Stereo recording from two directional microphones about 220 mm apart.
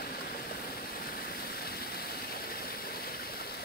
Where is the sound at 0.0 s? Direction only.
45° left (ahead or behind).